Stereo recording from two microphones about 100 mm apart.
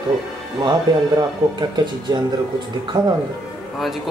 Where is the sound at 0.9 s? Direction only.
45° right (ahead or behind).